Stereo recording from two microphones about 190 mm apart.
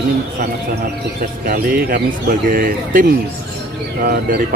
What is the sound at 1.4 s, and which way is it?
Speech, 55° right (ahead or behind).